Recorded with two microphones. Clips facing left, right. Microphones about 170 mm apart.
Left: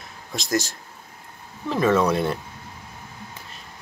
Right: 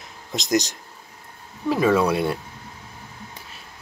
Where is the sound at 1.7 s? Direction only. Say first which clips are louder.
Right 1 dB; 10° right (ahead or behind).